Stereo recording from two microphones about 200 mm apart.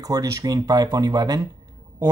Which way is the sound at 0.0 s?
15° right (ahead or behind).